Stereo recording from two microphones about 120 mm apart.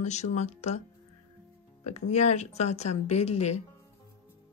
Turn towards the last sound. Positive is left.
turn(degrees=65)  # may be behind; listen again after turning